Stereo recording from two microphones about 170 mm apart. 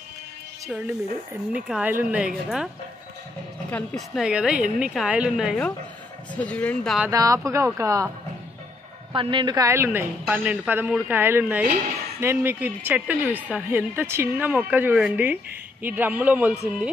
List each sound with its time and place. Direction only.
0.7 s a woman's voice: 5° right (ahead or behind)
3.7 s a woman's voice: 5° left (ahead or behind)
6.3 s speech: 10° left (ahead or behind)
7.1 s a woman's voice: 20° right (ahead or behind)
9.1 s a woman's voice: 30° right (ahead or behind); by 11.6 s 10° right (ahead or behind)
11.6 s speech: 50° right (ahead or behind)
12.2 s a woman's voice: 15° right (ahead or behind)